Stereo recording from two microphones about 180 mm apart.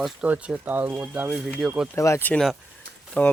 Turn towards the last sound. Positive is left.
turn(degrees=5)  # may be behind; listen again after turning